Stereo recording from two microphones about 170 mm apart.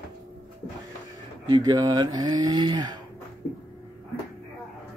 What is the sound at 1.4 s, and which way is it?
Speech, 25° right (ahead or behind).